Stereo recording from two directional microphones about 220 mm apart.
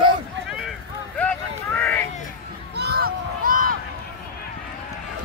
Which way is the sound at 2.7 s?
45° right (ahead or behind).